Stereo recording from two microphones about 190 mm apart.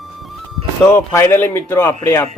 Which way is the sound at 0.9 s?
10° left (ahead or behind).